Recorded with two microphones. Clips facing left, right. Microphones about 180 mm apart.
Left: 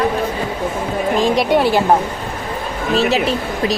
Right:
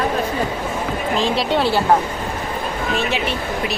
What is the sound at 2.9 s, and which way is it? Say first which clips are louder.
Speech: left 8 dB; 35° left (ahead or behind).